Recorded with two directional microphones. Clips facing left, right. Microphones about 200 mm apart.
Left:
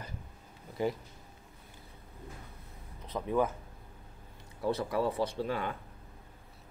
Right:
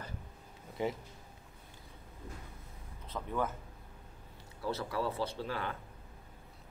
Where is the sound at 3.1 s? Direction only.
15° left (ahead or behind).